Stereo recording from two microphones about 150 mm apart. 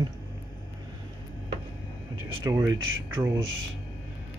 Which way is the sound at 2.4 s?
20° right (ahead or behind).